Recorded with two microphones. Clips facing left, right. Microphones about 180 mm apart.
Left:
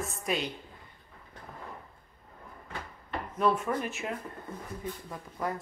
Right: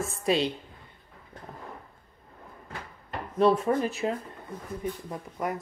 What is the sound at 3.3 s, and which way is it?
Speech, 35° right (ahead or behind).